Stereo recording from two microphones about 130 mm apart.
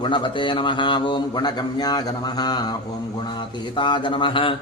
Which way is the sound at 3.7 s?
35° left (ahead or behind).